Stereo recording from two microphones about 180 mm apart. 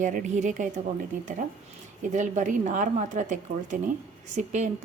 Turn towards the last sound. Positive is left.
turn(degrees=-40)  # may be behind; listen again after turning